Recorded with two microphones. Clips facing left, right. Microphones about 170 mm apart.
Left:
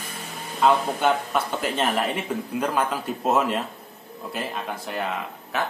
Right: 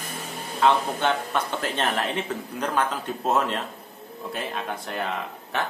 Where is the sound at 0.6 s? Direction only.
5° left (ahead or behind).